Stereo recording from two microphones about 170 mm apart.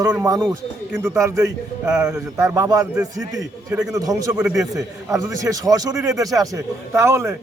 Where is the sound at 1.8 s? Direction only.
5° right (ahead or behind).